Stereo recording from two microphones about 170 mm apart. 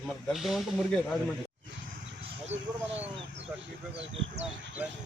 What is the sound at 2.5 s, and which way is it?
Bird, 90° right.